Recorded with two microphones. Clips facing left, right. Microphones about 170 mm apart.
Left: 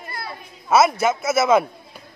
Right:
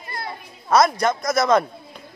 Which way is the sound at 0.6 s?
5° left (ahead or behind).